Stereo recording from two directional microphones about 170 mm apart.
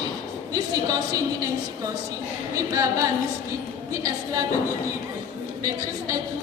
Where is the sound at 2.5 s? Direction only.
20° right (ahead or behind).